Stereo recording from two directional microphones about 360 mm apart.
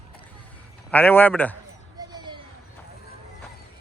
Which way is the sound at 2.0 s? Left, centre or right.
Centre.